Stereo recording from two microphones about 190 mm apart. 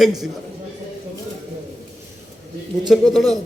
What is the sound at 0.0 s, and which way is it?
Speech, centre (ahead or behind).